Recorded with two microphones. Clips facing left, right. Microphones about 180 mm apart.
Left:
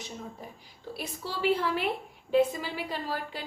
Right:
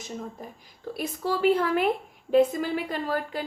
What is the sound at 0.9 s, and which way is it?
A woman's voice, 50° right (ahead or behind).